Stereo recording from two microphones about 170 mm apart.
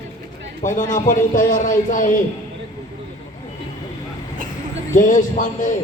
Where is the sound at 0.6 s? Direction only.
50° left (ahead or behind).